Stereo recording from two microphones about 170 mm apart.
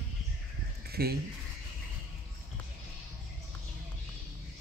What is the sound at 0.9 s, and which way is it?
Speech, 65° right (ahead or behind).